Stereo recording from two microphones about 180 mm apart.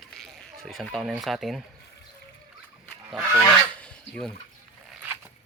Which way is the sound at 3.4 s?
5° left (ahead or behind).